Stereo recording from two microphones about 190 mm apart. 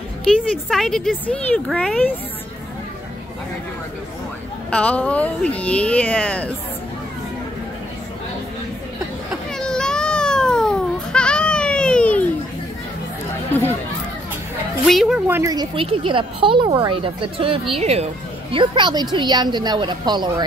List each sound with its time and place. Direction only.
0.2 s speech: centre (ahead or behind)
4.6 s speech: 5° left (ahead or behind)
9.3 s baby cry: 5° left (ahead or behind)
13.5 s chatter: 10° left (ahead or behind)
14.9 s a woman's voice: centre (ahead or behind); by 20.4 s 25° right (ahead or behind)